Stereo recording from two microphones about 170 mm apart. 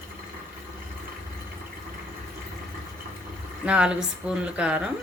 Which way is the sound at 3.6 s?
5° right (ahead or behind).